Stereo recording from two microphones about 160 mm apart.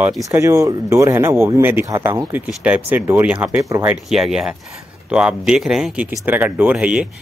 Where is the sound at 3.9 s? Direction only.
Centre (ahead or behind).